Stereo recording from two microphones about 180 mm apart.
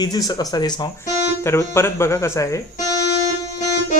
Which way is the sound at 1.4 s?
15° left (ahead or behind).